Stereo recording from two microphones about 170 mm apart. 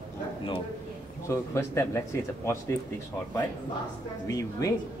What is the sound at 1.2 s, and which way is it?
A man's voice, 15° left (ahead or behind).